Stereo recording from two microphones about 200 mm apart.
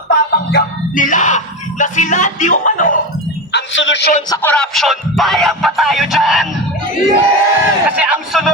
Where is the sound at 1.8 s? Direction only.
40° left (ahead or behind).